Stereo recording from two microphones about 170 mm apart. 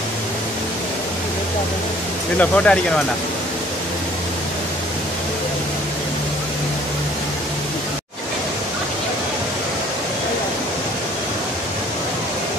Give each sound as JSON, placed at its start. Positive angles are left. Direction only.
{"t": 2.3, "sound": "speech", "side_deg": 10}